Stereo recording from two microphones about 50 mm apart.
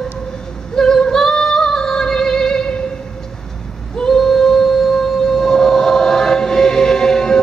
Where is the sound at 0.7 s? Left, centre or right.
Centre.